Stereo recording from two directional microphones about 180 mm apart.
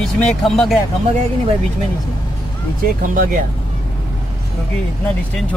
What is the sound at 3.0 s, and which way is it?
Speech, 50° right (ahead or behind).